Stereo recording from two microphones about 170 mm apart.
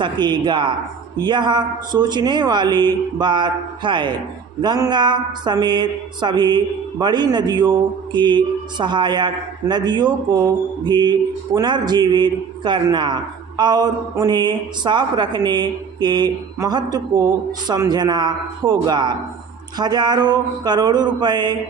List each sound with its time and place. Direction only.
0.0 s speech: 25° right (ahead or behind)